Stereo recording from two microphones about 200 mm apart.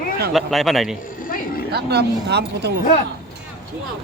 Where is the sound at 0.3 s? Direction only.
Centre (ahead or behind).